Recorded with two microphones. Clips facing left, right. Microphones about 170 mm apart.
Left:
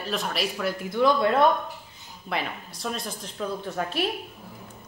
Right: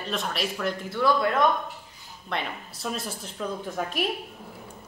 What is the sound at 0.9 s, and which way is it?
Speech, 20° left (ahead or behind).